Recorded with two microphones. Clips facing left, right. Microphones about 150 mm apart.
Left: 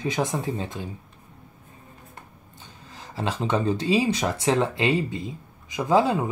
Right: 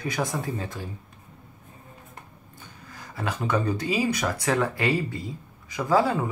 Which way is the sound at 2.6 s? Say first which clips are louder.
Left 1 dB; 25° left (ahead or behind).